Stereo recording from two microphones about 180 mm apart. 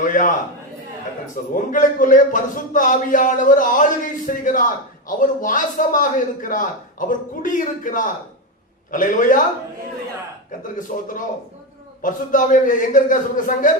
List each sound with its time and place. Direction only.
0.0 s a man's voice: 50° left (ahead or behind)
1.5 s a man's voice: 50° left (ahead or behind)
10.6 s a man's voice: 45° left (ahead or behind)